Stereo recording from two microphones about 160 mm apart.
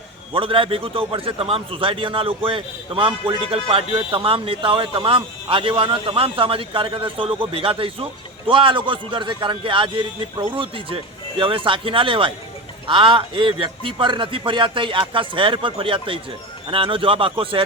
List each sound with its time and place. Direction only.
0.3 s a man's voice: 35° right (ahead or behind)